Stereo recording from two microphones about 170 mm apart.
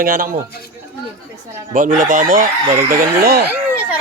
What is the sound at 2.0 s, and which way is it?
Speech, 50° right (ahead or behind).